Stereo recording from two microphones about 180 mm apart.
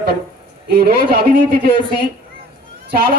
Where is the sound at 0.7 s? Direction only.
60° right (ahead or behind).